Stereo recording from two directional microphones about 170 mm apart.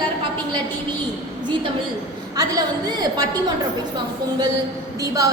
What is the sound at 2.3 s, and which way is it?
Speech, 25° right (ahead or behind).